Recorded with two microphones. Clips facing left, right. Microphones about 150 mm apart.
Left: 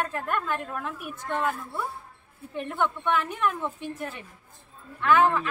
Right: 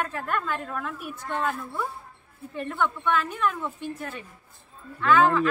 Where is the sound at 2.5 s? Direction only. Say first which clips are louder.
Even; 15° left (ahead or behind).